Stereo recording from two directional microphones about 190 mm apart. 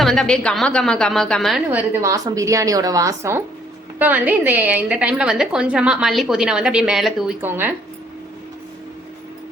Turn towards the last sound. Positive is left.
turn(degrees=-10)  # may be behind; listen again after turning